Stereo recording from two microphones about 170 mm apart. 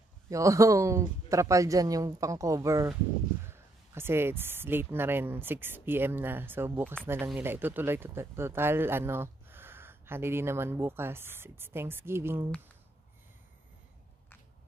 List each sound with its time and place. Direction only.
0.3 s speech: 20° right (ahead or behind)